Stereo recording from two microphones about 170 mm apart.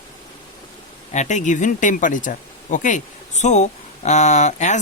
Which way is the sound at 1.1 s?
45° left (ahead or behind).